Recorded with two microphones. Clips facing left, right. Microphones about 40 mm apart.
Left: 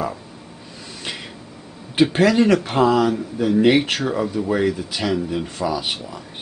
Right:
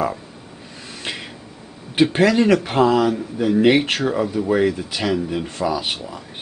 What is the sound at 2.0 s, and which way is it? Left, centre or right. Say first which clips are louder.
Speech: even; centre.